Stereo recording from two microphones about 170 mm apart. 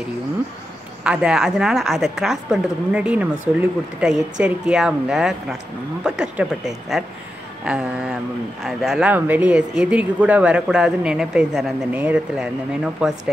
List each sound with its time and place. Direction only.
1.0 s a woman's voice: 5° right (ahead or behind)